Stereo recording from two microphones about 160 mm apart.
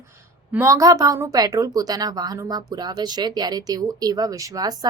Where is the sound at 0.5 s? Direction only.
15° right (ahead or behind).